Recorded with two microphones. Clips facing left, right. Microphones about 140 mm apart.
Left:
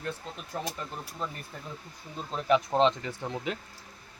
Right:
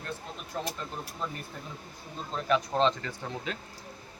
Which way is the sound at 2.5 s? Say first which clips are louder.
Left 2 dB; 20° left (ahead or behind).